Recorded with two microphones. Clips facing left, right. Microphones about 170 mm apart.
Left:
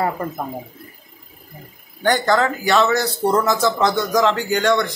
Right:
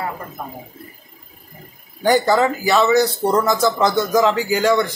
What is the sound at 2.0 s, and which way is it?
Speech, 10° right (ahead or behind).